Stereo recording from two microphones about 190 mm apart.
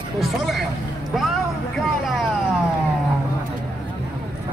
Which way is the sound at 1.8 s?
Centre (ahead or behind).